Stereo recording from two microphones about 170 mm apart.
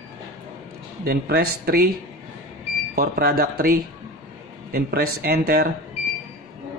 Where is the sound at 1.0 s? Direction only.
70° right (ahead or behind).